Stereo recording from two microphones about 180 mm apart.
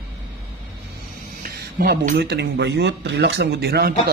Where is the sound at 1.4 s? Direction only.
55° right (ahead or behind).